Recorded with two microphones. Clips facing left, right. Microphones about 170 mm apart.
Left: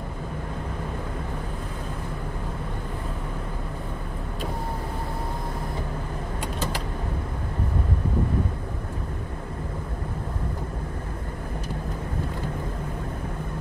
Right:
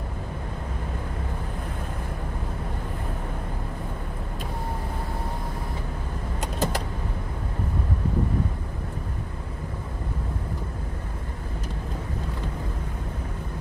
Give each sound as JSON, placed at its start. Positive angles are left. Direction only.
{"t": 6.4, "sound": "vehicle", "side_deg": -45}